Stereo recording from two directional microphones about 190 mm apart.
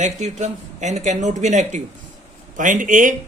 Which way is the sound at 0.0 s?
40° right (ahead or behind).